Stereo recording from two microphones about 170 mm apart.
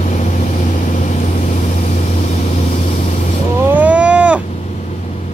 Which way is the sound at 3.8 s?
10° right (ahead or behind).